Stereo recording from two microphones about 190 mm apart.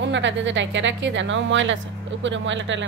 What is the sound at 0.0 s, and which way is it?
Speech, 70° right (ahead or behind).